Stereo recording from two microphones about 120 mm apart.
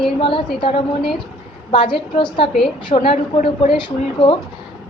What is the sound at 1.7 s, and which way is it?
Speech, 45° left (ahead or behind).